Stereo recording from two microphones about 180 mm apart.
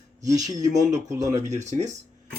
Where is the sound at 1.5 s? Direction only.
40° right (ahead or behind).